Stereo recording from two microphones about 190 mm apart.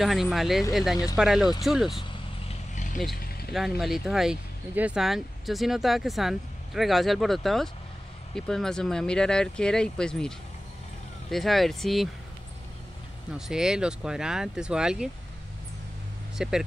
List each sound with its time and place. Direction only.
0.0 s speech: centre (ahead or behind)
2.0 s vehicle: 35° left (ahead or behind)
3.5 s speech: centre (ahead or behind)
13.5 s speech: 5° right (ahead or behind)
16.3 s speech: 5° right (ahead or behind)